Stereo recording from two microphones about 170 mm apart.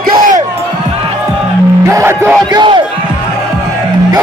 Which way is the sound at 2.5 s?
25° right (ahead or behind).